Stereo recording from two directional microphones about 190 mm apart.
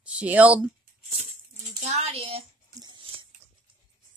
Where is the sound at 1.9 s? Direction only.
35° right (ahead or behind).